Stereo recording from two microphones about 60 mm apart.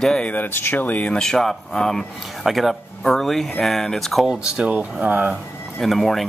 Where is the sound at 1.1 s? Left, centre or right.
Centre.